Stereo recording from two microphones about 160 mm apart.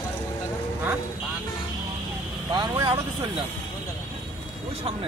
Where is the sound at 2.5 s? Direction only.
25° right (ahead or behind).